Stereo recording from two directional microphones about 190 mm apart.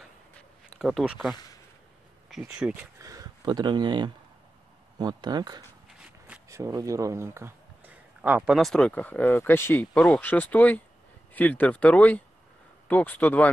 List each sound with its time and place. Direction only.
0.7 s speech: centre (ahead or behind)
2.6 s speech: 15° right (ahead or behind); by 13.5 s 10° left (ahead or behind)